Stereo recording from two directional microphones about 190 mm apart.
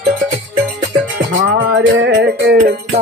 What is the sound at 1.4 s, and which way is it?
Music, 75° right (ahead or behind).